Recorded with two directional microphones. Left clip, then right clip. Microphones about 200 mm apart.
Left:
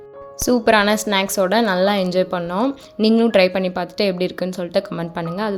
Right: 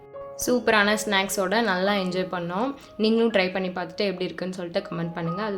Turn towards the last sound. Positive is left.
turn(degrees=40)  # may be behind; listen again after turning